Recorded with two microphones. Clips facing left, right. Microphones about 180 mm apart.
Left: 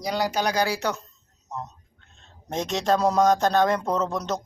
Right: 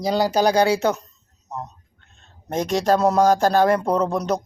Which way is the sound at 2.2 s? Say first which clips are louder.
Right 4 dB; 5° right (ahead or behind).